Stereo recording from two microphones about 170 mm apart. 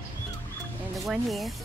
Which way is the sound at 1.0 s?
Centre (ahead or behind).